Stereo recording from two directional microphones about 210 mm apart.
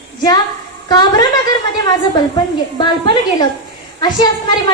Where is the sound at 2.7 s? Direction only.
20° left (ahead or behind).